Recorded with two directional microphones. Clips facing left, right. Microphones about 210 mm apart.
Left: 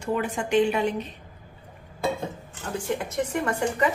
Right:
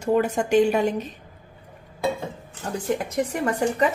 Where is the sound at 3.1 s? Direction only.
35° right (ahead or behind).